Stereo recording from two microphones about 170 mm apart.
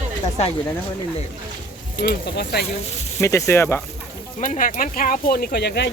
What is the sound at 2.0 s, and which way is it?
Speech, 75° left (ahead or behind).